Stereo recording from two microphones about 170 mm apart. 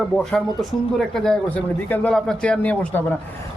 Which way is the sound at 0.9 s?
5° left (ahead or behind).